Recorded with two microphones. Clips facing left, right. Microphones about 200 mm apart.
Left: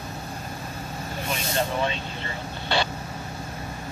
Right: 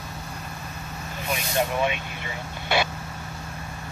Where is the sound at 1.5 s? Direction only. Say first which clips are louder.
Right 2 dB; 15° right (ahead or behind).